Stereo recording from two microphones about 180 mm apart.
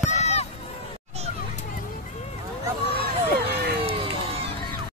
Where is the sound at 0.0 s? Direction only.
40° left (ahead or behind).